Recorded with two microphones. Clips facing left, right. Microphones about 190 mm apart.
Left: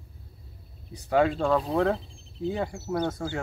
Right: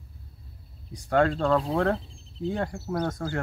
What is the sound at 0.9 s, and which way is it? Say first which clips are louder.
Speech: even; 5° left (ahead or behind).